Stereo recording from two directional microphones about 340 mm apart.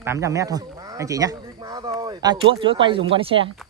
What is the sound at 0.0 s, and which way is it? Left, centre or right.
A man's voice, centre.